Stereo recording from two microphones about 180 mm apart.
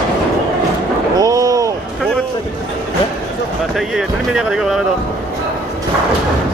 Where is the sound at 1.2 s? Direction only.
20° right (ahead or behind).